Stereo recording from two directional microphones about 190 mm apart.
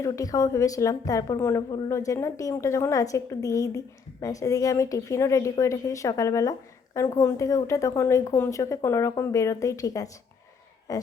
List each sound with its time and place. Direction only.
0.0 s a woman's voice: 15° left (ahead or behind)